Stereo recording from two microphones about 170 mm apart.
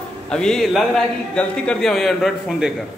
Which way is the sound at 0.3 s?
5° left (ahead or behind).